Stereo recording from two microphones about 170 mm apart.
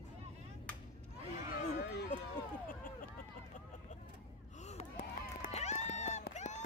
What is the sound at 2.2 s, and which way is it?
Run, 55° left (ahead or behind).